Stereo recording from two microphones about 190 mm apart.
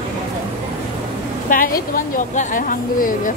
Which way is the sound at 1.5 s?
45° left (ahead or behind).